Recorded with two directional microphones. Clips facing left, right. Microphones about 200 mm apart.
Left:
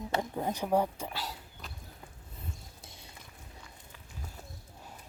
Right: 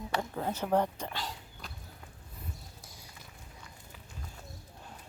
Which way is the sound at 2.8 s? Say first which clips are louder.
Left 1 dB; 25° left (ahead or behind).